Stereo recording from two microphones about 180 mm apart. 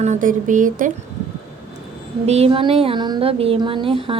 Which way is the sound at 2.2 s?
35° right (ahead or behind).